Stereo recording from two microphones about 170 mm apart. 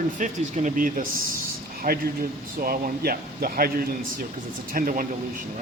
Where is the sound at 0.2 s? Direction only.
50° right (ahead or behind).